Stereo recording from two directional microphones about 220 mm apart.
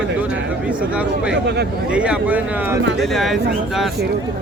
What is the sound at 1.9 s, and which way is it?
Speech, 5° right (ahead or behind).